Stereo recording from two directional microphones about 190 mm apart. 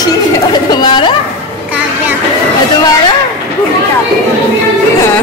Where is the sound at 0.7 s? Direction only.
25° left (ahead or behind).